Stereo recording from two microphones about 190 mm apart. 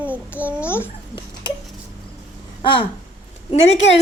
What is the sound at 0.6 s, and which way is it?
Babbling, 10° left (ahead or behind).